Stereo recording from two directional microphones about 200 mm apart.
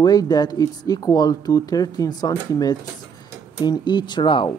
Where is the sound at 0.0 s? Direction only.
20° left (ahead or behind).